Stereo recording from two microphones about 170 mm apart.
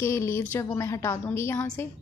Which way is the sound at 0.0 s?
15° left (ahead or behind).